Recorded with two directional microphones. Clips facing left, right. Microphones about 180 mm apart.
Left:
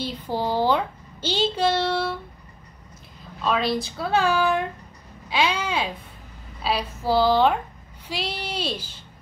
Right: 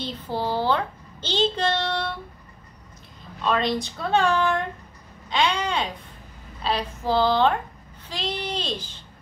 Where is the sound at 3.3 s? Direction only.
5° left (ahead or behind).